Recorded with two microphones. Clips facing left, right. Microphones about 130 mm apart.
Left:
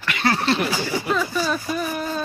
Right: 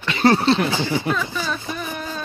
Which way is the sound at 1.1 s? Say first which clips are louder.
Left 3 dB; 10° left (ahead or behind).